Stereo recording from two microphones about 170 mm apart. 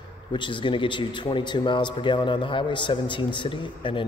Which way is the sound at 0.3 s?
30° left (ahead or behind).